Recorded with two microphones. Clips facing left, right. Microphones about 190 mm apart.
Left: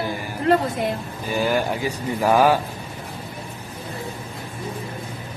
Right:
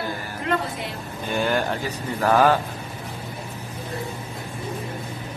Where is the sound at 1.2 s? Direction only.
5° left (ahead or behind).